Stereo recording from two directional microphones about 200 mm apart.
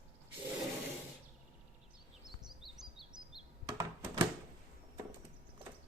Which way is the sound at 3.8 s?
15° right (ahead or behind).